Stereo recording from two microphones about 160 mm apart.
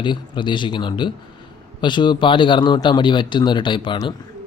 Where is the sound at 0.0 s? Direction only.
30° left (ahead or behind).